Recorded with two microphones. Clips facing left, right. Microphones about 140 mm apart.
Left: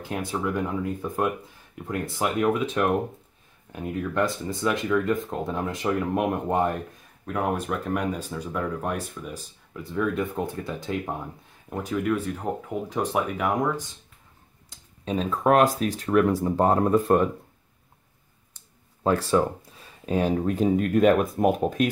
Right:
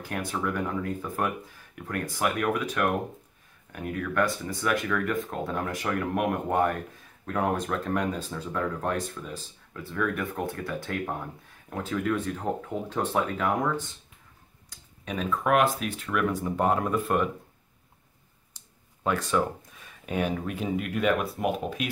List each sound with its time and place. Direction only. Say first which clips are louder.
0.0 s speech: left 2 dB; 20° left (ahead or behind)
7.2 s speech: left 1 dB; 10° left (ahead or behind)
11.7 s speech: left 2 dB; 5° left (ahead or behind)
14.7 s speech: left 7 dB; 30° left (ahead or behind)
19.0 s speech: left 4 dB; 30° left (ahead or behind)